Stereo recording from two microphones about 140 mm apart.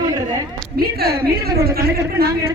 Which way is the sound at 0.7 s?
90° right.